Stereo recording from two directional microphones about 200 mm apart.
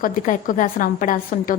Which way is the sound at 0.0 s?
40° left (ahead or behind).